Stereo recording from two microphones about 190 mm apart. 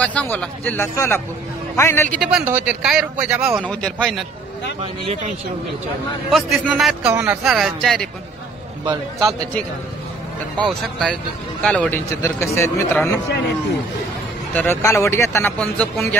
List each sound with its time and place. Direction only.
0.0 s speech: 5° left (ahead or behind)
2.1 s a man's voice: 5° right (ahead or behind)
6.3 s a man's voice: centre (ahead or behind)
8.8 s a man's voice: 20° right (ahead or behind)
10.6 s a man's voice: centre (ahead or behind)
14.5 s speech: 10° left (ahead or behind)